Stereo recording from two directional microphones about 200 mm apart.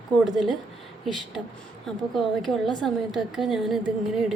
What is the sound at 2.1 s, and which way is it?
A woman's voice, centre (ahead or behind).